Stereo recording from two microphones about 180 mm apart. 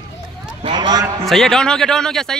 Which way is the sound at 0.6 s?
25° right (ahead or behind).